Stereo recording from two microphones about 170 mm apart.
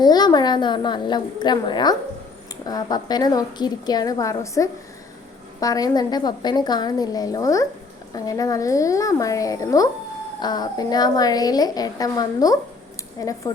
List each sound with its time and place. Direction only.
0.0 s a woman's voice: 25° left (ahead or behind)